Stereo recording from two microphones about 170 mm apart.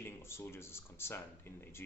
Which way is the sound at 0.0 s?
15° left (ahead or behind).